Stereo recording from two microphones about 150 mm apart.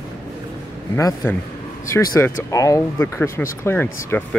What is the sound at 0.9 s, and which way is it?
Speech, 20° left (ahead or behind).